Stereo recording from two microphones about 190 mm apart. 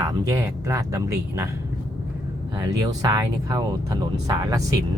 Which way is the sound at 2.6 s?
20° right (ahead or behind).